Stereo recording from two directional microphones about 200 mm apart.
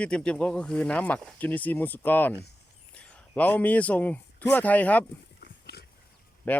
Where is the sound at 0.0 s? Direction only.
5° left (ahead or behind).